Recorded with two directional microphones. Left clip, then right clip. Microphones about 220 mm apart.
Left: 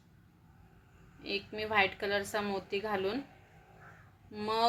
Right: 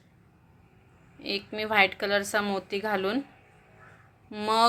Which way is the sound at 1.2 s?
25° right (ahead or behind).